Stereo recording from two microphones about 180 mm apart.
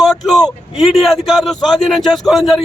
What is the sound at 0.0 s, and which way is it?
Speech, centre (ahead or behind).